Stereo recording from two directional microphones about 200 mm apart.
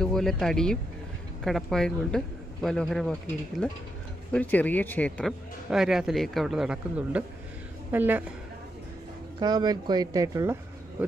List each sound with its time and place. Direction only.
0.0 s a woman's voice: centre (ahead or behind)
9.4 s speech: 20° right (ahead or behind)